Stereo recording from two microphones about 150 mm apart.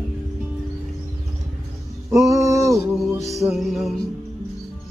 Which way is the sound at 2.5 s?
20° right (ahead or behind).